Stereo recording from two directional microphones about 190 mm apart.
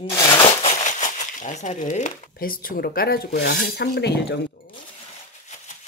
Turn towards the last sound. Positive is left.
turn(degrees=60)  # may be behind; listen again after turning